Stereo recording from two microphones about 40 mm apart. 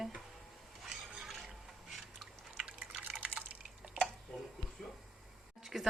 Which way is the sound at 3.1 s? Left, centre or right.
Right.